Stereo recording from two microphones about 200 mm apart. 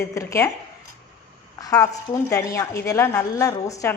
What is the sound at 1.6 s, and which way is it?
Speech, 20° left (ahead or behind).